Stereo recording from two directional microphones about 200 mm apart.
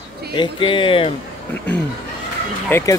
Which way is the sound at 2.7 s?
15° left (ahead or behind).